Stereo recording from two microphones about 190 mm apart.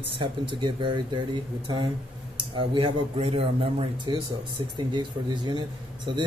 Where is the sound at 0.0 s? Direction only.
25° right (ahead or behind).